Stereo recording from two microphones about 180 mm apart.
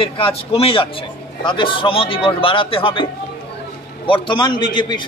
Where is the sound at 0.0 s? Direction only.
30° left (ahead or behind).